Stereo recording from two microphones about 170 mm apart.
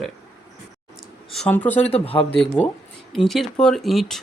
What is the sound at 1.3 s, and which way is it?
Speech, 5° left (ahead or behind).